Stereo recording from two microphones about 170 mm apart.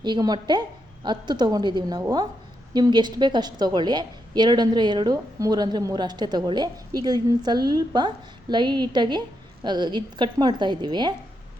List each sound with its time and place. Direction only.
0.0 s a woman's voice: 25° right (ahead or behind)